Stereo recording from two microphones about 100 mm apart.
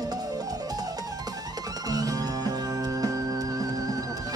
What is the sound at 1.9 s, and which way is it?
Music, 40° right (ahead or behind).